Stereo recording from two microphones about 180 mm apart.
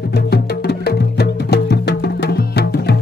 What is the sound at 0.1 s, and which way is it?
Music, 65° left (ahead or behind).